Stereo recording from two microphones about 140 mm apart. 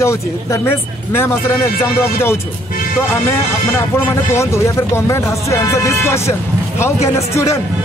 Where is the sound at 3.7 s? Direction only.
20° left (ahead or behind).